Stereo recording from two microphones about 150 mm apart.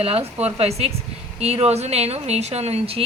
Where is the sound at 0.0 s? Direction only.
40° right (ahead or behind).